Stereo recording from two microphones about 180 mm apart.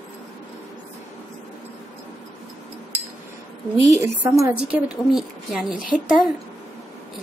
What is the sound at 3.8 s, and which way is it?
Speech, 15° right (ahead or behind).